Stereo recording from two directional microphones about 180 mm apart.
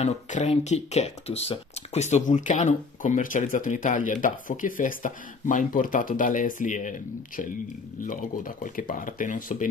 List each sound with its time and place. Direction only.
0.0 s speech: 40° left (ahead or behind)